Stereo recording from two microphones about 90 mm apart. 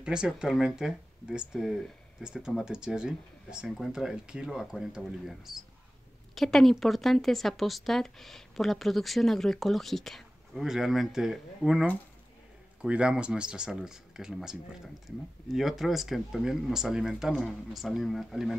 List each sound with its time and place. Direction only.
0.0 s a woman's voice: 10° right (ahead or behind)